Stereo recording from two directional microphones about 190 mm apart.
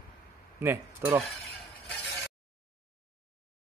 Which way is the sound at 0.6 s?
15° right (ahead or behind).